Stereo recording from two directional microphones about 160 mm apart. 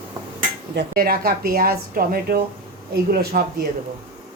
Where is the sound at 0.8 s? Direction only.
70° right (ahead or behind).